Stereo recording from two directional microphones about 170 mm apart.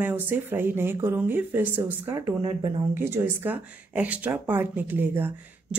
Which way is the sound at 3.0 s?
15° right (ahead or behind).